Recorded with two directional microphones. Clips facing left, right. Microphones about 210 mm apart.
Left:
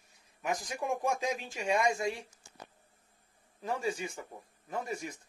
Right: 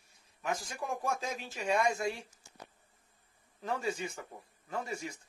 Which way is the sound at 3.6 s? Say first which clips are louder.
Left 1 dB; 15° left (ahead or behind).